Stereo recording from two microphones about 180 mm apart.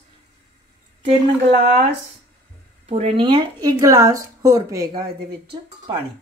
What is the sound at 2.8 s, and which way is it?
A woman's voice, 35° right (ahead or behind).